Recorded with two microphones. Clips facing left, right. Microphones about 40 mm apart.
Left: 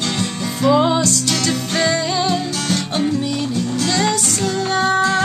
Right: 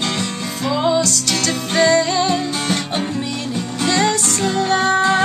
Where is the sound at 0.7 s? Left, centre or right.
Centre.